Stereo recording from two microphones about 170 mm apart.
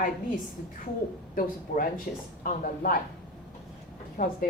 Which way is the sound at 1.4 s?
55° left (ahead or behind).